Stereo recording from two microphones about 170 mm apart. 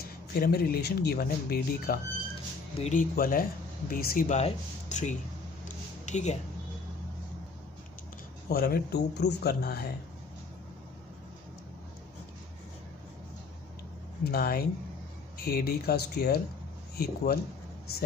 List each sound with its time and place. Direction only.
0.3 s speech: 65° left (ahead or behind)
2.8 s speech: 50° left (ahead or behind)
4.4 s speech: 40° left (ahead or behind)
8.5 s speech: 65° left (ahead or behind)
14.2 s speech: 60° left (ahead or behind)